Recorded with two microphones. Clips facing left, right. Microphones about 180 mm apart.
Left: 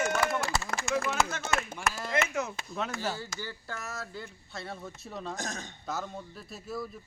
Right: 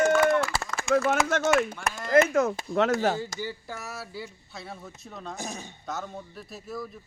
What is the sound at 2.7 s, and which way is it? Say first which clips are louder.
Speech: right 11 dB; 85° right.